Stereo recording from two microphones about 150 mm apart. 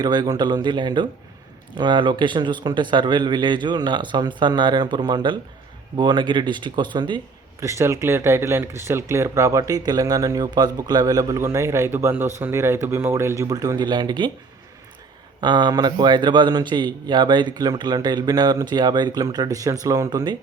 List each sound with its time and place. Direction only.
0.0 s speech: 25° right (ahead or behind)
7.6 s speech: 20° right (ahead or behind)
15.4 s speech: 30° right (ahead or behind)